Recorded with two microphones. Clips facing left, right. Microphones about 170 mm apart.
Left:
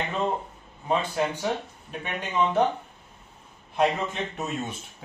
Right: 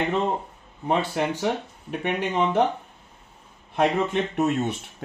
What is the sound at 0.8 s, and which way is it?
Speech, 65° right (ahead or behind).